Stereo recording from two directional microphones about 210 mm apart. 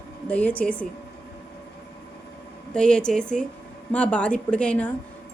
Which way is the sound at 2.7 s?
5° left (ahead or behind).